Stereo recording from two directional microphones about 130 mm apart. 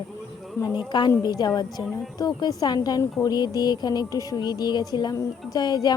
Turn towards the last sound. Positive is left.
turn(degrees=30)  # may be behind; listen again after turning